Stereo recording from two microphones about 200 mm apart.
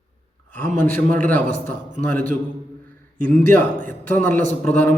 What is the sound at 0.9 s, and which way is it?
A man's voice, 10° left (ahead or behind).